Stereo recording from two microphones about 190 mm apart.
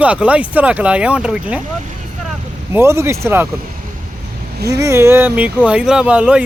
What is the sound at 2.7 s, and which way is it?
Speech, 15° right (ahead or behind).